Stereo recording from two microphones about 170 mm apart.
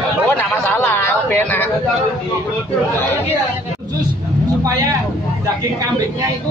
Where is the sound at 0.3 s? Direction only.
10° left (ahead or behind).